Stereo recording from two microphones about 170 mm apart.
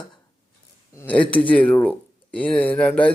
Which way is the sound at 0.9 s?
10° left (ahead or behind).